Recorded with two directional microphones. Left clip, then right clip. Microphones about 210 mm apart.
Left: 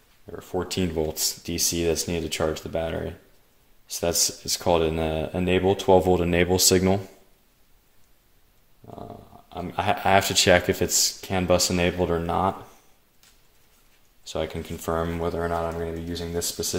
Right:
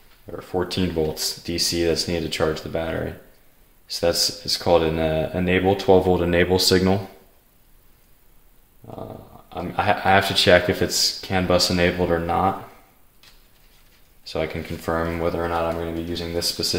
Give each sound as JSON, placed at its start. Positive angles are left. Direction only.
{"t": 0.4, "sound": "speech", "side_deg": 45}
{"t": 9.5, "sound": "speech", "side_deg": 45}
{"t": 14.2, "sound": "speech", "side_deg": 40}